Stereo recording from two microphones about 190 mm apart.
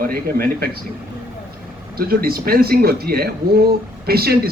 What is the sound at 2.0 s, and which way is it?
Speech, 55° right (ahead or behind).